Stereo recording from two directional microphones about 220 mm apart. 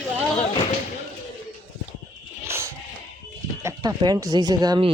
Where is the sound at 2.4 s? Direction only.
10° right (ahead or behind).